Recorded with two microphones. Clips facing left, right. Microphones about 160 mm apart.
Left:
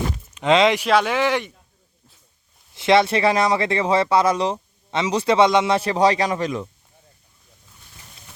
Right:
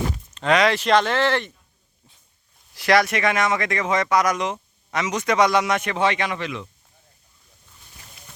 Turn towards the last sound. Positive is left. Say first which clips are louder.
# left 5 dB
turn(degrees=40)  # may be behind; listen again after turning